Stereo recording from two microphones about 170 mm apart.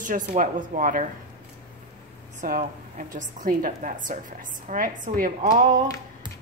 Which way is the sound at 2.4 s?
55° right (ahead or behind).